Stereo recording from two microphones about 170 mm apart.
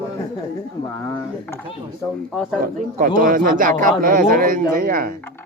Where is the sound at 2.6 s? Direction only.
55° right (ahead or behind).